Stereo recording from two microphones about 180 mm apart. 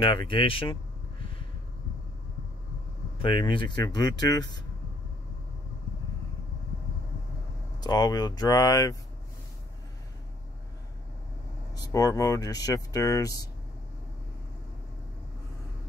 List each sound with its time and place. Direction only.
0.0 s speech: 25° left (ahead or behind)
3.2 s speech: 25° left (ahead or behind)
7.8 s speech: 20° left (ahead or behind)
11.8 s speech: 20° left (ahead or behind)